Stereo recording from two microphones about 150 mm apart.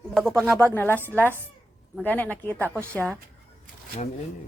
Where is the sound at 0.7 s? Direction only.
15° left (ahead or behind).